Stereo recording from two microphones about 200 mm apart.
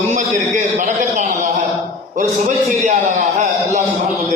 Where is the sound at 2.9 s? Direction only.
40° right (ahead or behind).